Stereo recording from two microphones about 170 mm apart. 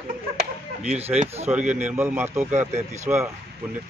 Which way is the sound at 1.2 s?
40° right (ahead or behind).